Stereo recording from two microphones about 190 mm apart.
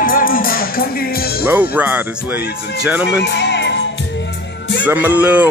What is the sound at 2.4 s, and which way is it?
Speech, 60° left (ahead or behind).